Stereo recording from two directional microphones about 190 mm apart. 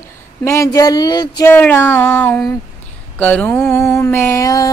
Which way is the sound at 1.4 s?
10° left (ahead or behind).